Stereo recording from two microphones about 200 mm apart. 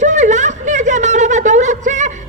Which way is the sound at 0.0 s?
40° right (ahead or behind).